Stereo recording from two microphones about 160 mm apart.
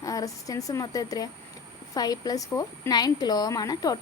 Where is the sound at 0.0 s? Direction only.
20° left (ahead or behind).